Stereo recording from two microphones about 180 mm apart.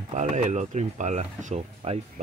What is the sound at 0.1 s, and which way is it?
Speech, 40° right (ahead or behind).